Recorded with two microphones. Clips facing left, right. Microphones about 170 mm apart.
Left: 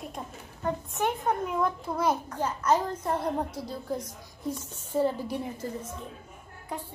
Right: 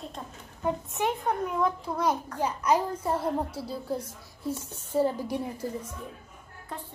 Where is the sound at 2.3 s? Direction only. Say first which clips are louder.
Even; 10° right (ahead or behind).